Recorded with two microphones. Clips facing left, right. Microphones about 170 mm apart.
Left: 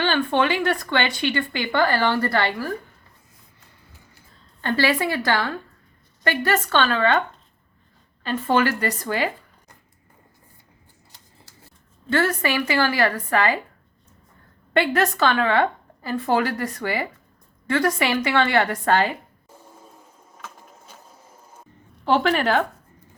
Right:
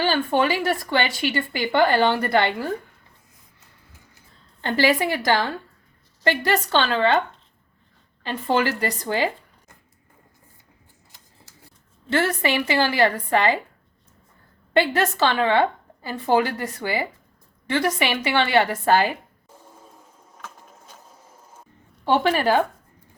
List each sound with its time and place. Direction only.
0.0 s a sound: 10° right (ahead or behind)
0.6 s a woman's voice: 5° right (ahead or behind)
4.6 s a woman's voice: 15° right (ahead or behind)
8.2 s a woman's voice: 15° right (ahead or behind)
9.0 s zipper: 25° right (ahead or behind)
12.1 s a woman's voice: 25° right (ahead or behind)
14.8 s a woman's voice: 25° right (ahead or behind)
19.5 s a sound: 5° left (ahead or behind)
22.0 s speech: 5° right (ahead or behind)